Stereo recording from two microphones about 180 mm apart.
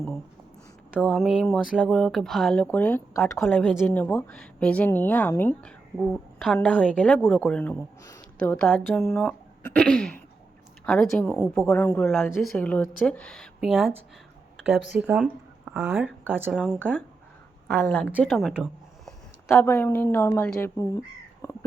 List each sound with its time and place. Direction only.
0.9 s speech: 5° left (ahead or behind); by 16.6 s 10° right (ahead or behind)
16.7 s a woman's voice: 5° left (ahead or behind)
19.5 s speech: 15° left (ahead or behind)
21.4 s a sound: 15° left (ahead or behind)